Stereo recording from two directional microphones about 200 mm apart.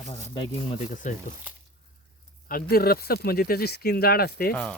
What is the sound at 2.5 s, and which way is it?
Speech, 45° left (ahead or behind).